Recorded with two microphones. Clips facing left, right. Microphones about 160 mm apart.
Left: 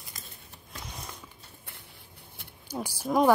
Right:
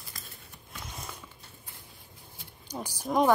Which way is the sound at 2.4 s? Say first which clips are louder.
Left 1 dB; 60° left (ahead or behind).